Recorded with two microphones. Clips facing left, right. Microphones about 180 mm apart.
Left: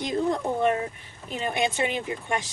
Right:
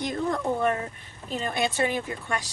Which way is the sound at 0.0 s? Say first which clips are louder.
Left 2 dB; 15° left (ahead or behind).